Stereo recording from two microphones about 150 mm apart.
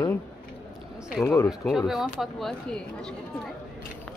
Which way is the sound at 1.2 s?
20° left (ahead or behind).